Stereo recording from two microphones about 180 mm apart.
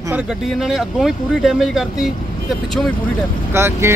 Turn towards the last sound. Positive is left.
turn(degrees=-15)  # may be behind; listen again after turning